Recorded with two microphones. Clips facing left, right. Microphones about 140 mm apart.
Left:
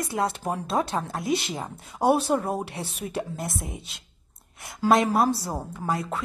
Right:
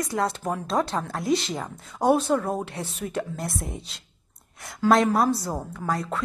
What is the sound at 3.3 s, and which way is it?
Speech, centre (ahead or behind).